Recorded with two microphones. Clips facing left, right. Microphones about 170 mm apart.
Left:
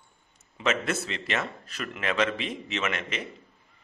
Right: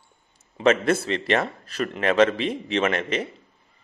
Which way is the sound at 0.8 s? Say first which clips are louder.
Right 9 dB; 35° right (ahead or behind).